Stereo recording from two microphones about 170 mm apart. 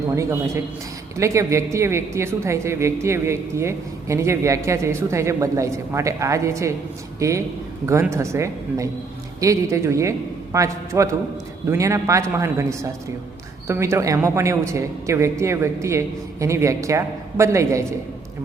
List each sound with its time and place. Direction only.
0.2 s a woman's voice: 15° right (ahead or behind)